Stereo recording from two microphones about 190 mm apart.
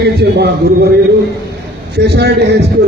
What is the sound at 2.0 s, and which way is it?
Speech, 60° right (ahead or behind).